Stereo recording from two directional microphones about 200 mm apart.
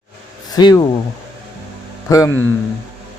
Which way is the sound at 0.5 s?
20° left (ahead or behind).